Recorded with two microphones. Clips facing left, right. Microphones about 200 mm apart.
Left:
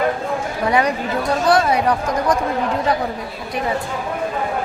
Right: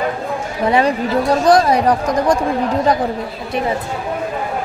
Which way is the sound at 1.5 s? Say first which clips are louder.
Right 3 dB; 35° right (ahead or behind).